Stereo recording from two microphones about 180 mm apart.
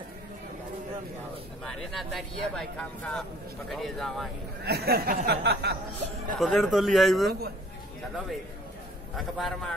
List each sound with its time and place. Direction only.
1.7 s speech: centre (ahead or behind)
4.6 s a sound: 60° right (ahead or behind)
6.3 s speech: centre (ahead or behind)
9.1 s speech: centre (ahead or behind)